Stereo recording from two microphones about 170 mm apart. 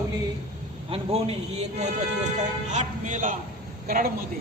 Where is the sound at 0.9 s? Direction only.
35° right (ahead or behind); by 4.1 s 55° right (ahead or behind).